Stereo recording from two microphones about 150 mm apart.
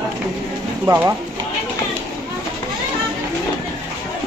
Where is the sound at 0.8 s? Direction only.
15° right (ahead or behind).